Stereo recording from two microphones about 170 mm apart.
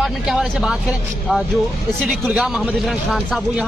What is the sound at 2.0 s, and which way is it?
Speech, centre (ahead or behind).